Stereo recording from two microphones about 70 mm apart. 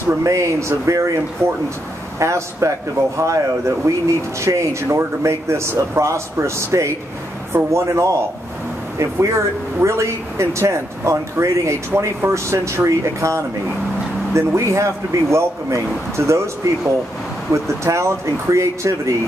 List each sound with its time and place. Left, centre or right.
0.2 s speech: right